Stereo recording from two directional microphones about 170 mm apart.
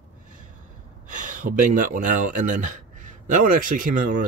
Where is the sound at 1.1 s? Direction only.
50° right (ahead or behind).